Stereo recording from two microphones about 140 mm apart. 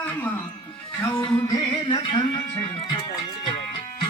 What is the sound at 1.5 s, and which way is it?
Music, 30° left (ahead or behind).